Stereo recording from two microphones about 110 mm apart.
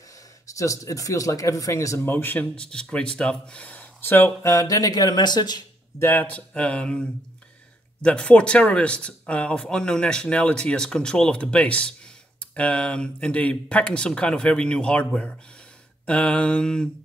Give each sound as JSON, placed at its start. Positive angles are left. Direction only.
{"t": 0.5, "sound": "speech", "side_deg": 30}
{"t": 5.9, "sound": "speech", "side_deg": 20}